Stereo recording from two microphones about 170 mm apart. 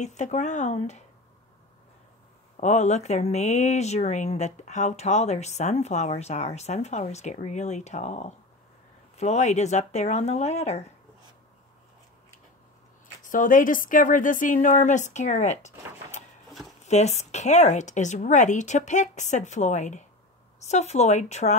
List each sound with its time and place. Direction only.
0.0 s speech: 40° left (ahead or behind)
2.5 s speech: 45° left (ahead or behind)
13.2 s speech: 50° left (ahead or behind)